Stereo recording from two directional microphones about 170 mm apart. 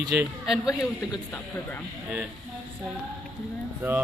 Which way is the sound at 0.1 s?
10° right (ahead or behind).